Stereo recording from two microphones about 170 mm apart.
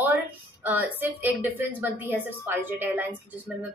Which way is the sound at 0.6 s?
10° right (ahead or behind).